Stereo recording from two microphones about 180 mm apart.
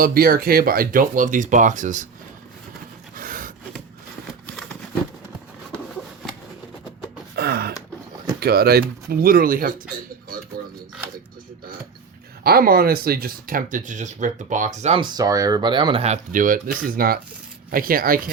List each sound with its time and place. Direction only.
0.0 s speech: 55° right (ahead or behind)
3.2 s wood: 50° right (ahead or behind)
7.3 s gasp: 60° right (ahead or behind)
8.4 s speech: 60° right (ahead or behind)
12.4 s speech: 55° right (ahead or behind)